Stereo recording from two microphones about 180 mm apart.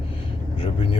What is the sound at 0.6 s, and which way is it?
Speech, 30° left (ahead or behind).